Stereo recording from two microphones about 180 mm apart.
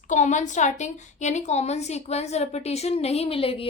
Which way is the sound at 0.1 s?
45° left (ahead or behind).